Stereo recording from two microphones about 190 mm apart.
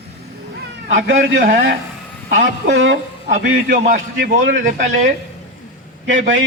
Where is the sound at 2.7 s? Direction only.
80° right.